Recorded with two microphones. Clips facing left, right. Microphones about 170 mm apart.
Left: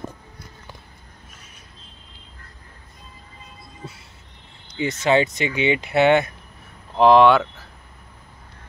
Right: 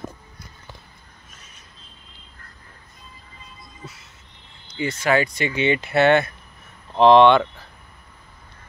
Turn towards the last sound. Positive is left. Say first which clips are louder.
# right 1 dB
turn(degrees=5)  # may be behind; listen again after turning